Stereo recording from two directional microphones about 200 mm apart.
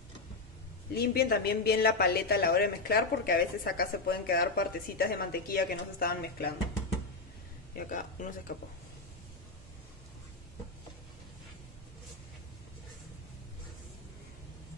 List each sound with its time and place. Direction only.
0.9 s speech: 50° left (ahead or behind)
7.7 s speech: 40° left (ahead or behind)